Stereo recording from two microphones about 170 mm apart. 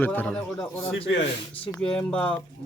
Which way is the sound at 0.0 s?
10° left (ahead or behind).